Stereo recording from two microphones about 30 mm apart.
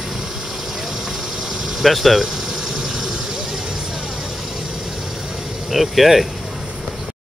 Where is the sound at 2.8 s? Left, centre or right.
Right.